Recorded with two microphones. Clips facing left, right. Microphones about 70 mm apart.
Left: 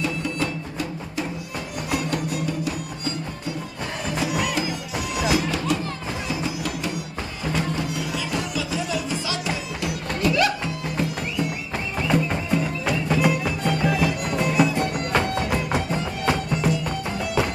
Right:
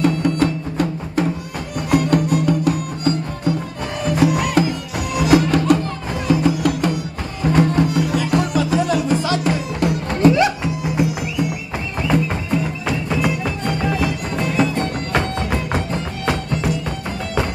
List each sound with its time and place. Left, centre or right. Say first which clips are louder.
0.0 s music: right 9 dB; right
10.2 s music: right 7 dB; right
10.6 s music: right 6 dB; centre